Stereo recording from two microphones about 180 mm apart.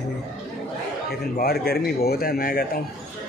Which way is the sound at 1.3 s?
55° left (ahead or behind).